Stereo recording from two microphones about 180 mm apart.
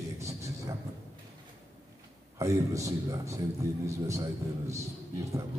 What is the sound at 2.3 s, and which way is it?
A man's voice, 15° right (ahead or behind).